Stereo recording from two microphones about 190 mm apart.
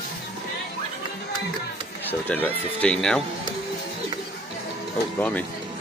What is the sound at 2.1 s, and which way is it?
Speech, 10° left (ahead or behind).